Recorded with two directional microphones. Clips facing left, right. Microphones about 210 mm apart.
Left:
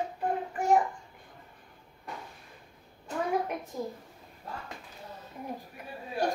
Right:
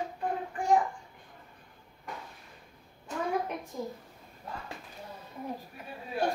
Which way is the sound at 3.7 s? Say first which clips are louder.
Left 1 dB; 5° left (ahead or behind).